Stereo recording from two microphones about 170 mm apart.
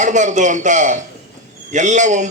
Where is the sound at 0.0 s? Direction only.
45° right (ahead or behind).